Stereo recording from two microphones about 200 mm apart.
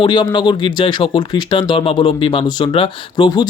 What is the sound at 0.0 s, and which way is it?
Speech, 25° left (ahead or behind).